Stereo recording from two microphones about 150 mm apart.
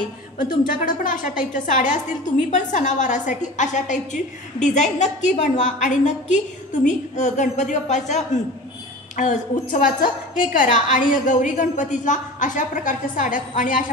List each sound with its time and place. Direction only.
0.7 s a woman's voice: 65° left (ahead or behind)